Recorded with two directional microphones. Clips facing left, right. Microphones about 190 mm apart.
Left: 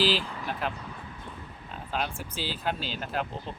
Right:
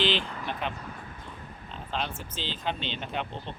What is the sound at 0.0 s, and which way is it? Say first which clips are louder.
Speech: left 1 dB; 5° left (ahead or behind).